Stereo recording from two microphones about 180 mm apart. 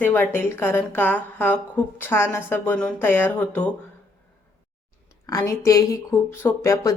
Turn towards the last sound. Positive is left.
turn(degrees=15)  # may be behind; listen again after turning